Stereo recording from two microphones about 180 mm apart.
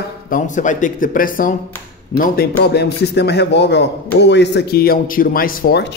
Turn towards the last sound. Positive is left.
turn(degrees=60)  # may be behind; listen again after turning